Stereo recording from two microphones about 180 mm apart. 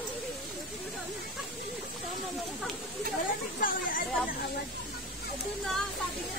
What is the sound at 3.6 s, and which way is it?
Chatter, 50° left (ahead or behind).